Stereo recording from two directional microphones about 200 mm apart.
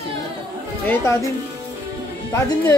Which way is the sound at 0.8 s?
15° left (ahead or behind).